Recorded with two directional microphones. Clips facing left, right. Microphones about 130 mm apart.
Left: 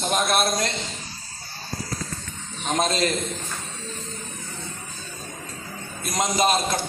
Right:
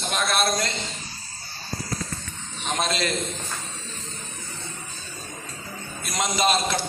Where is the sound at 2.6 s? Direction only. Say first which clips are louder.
Left 3 dB; 40° left (ahead or behind).